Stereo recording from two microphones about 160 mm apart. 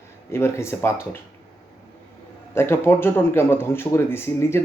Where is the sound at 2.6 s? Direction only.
15° left (ahead or behind).